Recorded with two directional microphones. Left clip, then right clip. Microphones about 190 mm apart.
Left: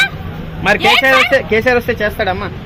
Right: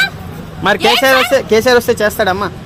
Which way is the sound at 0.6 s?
60° right (ahead or behind).